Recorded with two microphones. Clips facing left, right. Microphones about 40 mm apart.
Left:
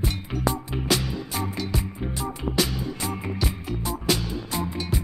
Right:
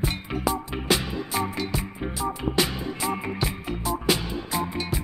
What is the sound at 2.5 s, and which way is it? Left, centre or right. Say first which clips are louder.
Music: left 2 dB; right.